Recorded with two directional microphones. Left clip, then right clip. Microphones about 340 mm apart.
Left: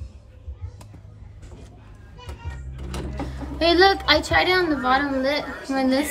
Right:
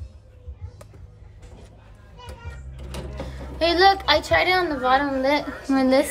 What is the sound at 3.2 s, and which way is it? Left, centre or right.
A woman's voice, centre.